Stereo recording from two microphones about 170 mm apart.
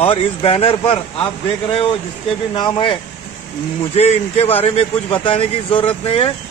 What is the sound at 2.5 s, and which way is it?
Speech, 30° left (ahead or behind).